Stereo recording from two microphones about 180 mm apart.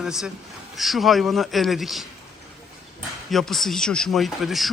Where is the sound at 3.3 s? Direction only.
Centre (ahead or behind).